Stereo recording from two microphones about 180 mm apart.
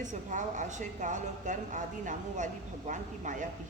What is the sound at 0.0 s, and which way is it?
A woman's voice, 45° right (ahead or behind).